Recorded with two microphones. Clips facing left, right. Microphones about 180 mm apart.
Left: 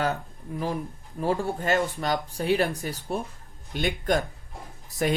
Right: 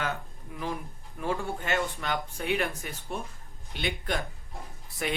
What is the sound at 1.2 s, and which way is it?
Speech, 35° left (ahead or behind).